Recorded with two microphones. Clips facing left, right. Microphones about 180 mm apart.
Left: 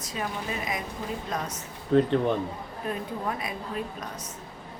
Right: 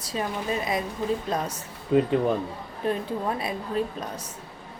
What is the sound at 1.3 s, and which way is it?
Speech, 30° right (ahead or behind).